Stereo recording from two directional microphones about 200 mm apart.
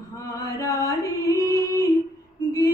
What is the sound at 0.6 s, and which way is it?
Music, 15° left (ahead or behind).